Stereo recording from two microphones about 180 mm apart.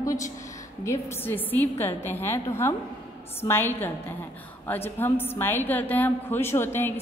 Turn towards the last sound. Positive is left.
turn(degrees=15)  # may be behind; listen again after turning